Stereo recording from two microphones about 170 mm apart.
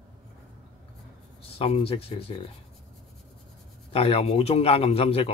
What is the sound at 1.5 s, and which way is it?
Speech, 35° left (ahead or behind).